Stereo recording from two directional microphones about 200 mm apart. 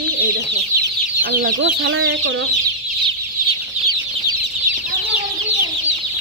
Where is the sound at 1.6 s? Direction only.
70° right (ahead or behind).